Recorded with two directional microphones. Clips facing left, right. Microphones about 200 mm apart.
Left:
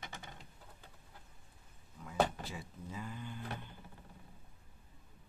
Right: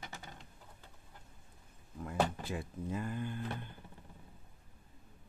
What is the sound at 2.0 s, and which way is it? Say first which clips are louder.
Speech: even; 55° right (ahead or behind).